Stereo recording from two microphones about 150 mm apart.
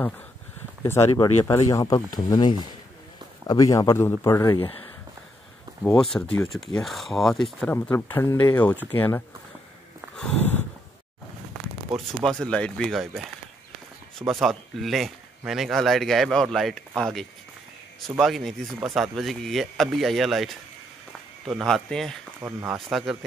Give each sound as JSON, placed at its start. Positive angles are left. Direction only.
{"t": 0.8, "sound": "speech", "side_deg": 20}
{"t": 6.1, "sound": "speech", "side_deg": 15}
{"t": 6.5, "sound": "speech", "side_deg": 0}
{"t": 10.1, "sound": "a sound", "side_deg": 10}
{"t": 12.2, "sound": "speech", "side_deg": 5}
{"t": 22.4, "sound": "speech", "side_deg": -15}
{"t": 22.8, "sound": "speech", "side_deg": 0}